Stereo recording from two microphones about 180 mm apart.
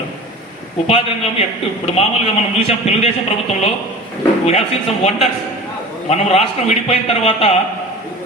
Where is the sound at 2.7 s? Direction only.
35° left (ahead or behind).